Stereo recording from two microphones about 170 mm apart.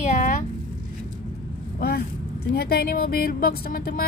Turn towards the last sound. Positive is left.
turn(degrees=65)  # may be behind; listen again after turning